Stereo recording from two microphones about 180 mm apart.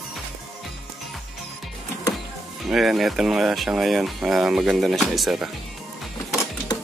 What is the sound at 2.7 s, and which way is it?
Speech, centre (ahead or behind).